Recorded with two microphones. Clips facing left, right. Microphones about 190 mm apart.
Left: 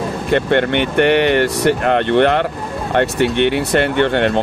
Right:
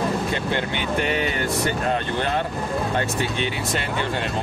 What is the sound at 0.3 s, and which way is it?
Speech, 65° left (ahead or behind).